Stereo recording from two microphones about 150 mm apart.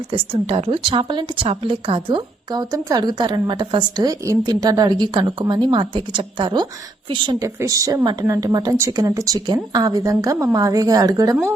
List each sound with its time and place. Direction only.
0.1 s speech: 40° right (ahead or behind)
7.4 s speech: 20° right (ahead or behind)